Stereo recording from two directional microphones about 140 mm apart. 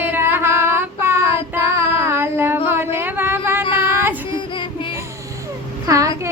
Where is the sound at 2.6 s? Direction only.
15° right (ahead or behind).